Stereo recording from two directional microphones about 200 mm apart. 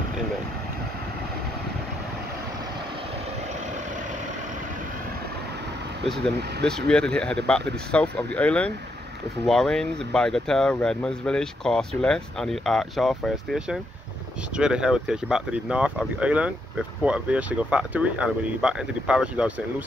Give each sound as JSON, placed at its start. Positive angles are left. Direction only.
{"t": 6.9, "sound": "speech", "side_deg": 5}